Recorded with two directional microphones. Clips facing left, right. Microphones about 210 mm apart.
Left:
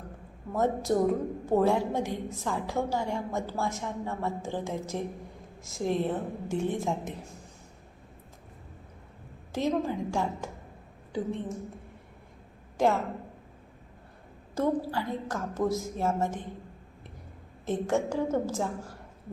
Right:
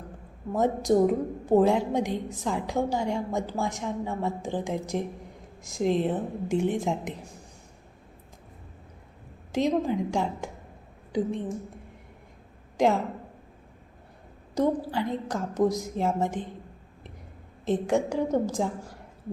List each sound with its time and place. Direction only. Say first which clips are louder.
0.5 s a woman's voice: right 4 dB; 15° right (ahead or behind)
9.5 s a woman's voice: right 3 dB; 15° right (ahead or behind)
14.5 s a woman's voice: right 2 dB; 15° right (ahead or behind)
17.7 s a woman's voice: right 3 dB; 15° right (ahead or behind)